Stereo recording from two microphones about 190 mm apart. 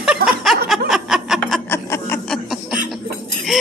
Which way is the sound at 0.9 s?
Centre (ahead or behind).